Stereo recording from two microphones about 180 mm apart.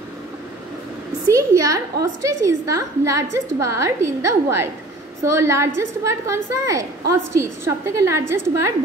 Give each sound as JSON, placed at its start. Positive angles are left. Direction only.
{"t": 1.3, "sound": "a woman's voice", "side_deg": -20}